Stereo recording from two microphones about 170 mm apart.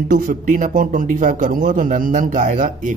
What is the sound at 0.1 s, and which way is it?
Speech, 50° right (ahead or behind).